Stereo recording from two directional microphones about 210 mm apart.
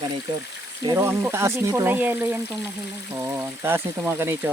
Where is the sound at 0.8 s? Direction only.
15° right (ahead or behind).